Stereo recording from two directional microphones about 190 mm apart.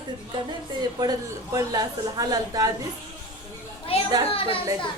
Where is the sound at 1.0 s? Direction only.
20° right (ahead or behind).